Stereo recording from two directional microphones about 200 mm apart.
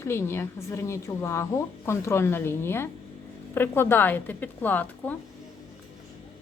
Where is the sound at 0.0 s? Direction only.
10° left (ahead or behind).